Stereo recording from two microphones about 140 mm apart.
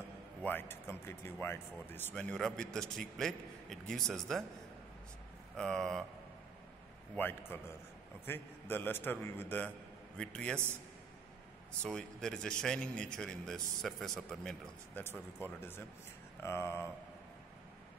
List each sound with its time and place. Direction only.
0.4 s speech: 15° left (ahead or behind)
5.6 s speech: 5° left (ahead or behind)
7.2 s a man's voice: 15° left (ahead or behind)
11.8 s speech: 5° left (ahead or behind)
16.4 s a man's voice: 15° left (ahead or behind)